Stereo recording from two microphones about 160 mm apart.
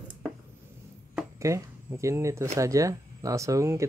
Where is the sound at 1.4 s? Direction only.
20° right (ahead or behind).